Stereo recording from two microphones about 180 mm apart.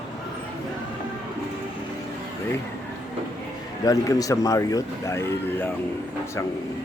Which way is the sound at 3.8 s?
20° left (ahead or behind).